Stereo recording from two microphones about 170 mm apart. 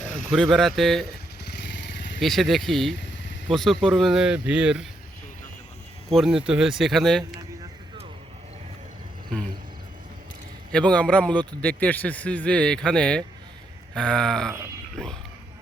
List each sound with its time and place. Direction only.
0.1 s speech: centre (ahead or behind)
1.8 s motorcycle: 90° left
2.2 s speech: centre (ahead or behind)
6.1 s speech: centre (ahead or behind)
10.7 s speech: 5° left (ahead or behind)